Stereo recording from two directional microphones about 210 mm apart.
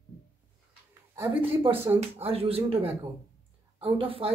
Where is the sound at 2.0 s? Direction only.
30° right (ahead or behind).